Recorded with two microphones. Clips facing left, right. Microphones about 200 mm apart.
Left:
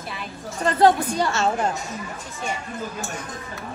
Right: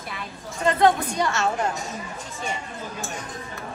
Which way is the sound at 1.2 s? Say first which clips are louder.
Left 1 dB; 30° left (ahead or behind).